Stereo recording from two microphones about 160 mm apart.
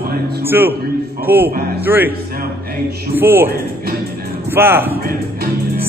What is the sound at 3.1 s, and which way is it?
Speech, 15° right (ahead or behind).